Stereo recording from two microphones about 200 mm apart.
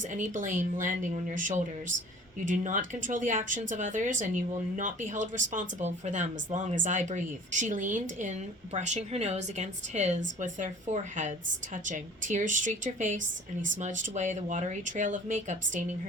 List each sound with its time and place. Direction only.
0.1 s speech: 40° right (ahead or behind)